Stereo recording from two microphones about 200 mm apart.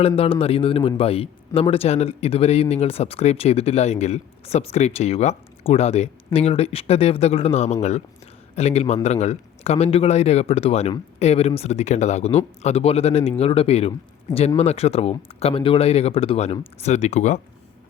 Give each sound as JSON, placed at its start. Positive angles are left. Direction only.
{"t": 0.2, "sound": "a man's voice", "side_deg": 30}